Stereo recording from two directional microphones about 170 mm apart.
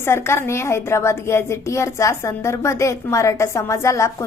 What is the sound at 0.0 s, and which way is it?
A woman's voice, 15° left (ahead or behind).